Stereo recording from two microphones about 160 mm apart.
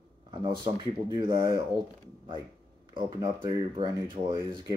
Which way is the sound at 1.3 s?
20° right (ahead or behind).